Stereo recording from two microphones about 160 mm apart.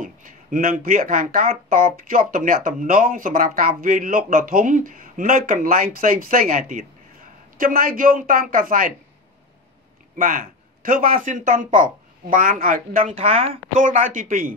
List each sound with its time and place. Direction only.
0.0 s speech: 55° right (ahead or behind)
10.1 s speech: 60° right (ahead or behind)
13.2 s a woman's voice: 35° right (ahead or behind)
13.7 s speech: 55° right (ahead or behind)